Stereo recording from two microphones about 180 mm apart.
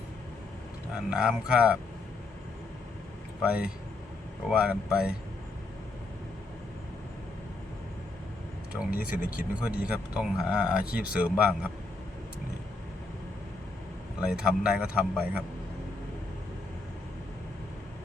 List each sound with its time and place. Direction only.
0.9 s a man's voice: 5° right (ahead or behind)
3.4 s a man's voice: 5° right (ahead or behind)
8.9 s speech: 50° left (ahead or behind)
9.8 s a man's voice: 5° right (ahead or behind)
14.2 s a man's voice: 5° right (ahead or behind)